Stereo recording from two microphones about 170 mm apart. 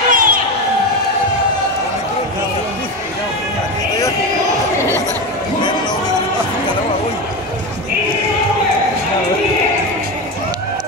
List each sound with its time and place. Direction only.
0.1 s crowd: 55° right (ahead or behind)